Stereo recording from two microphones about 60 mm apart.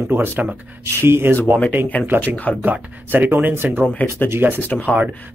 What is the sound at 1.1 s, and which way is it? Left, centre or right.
Speech, right.